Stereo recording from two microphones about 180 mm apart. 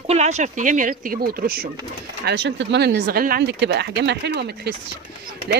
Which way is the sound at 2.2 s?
75° right (ahead or behind).